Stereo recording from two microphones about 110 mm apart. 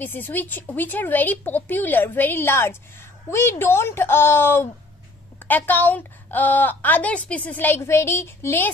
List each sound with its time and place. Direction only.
0.0 s a woman's voice: 20° left (ahead or behind)